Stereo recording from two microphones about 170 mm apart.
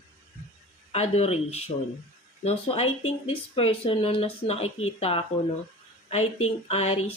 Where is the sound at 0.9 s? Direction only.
40° left (ahead or behind).